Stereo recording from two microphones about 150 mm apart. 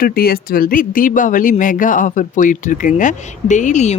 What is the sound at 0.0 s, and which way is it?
Speech, 80° left.